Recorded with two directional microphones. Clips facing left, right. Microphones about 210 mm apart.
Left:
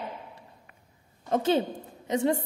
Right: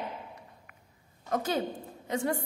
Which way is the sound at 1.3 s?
25° left (ahead or behind).